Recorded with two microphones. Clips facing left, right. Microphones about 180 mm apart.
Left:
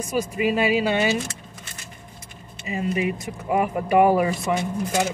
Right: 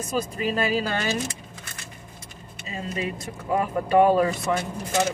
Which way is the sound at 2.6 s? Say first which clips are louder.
Left 6 dB; 15° left (ahead or behind).